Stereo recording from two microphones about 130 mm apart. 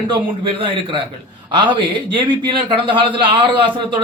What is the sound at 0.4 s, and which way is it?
A man's voice, 40° right (ahead or behind).